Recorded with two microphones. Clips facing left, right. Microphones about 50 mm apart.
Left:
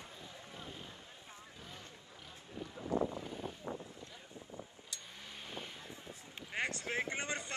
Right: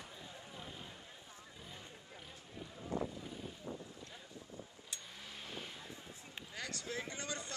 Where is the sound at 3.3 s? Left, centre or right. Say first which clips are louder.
Left 4 dB; left.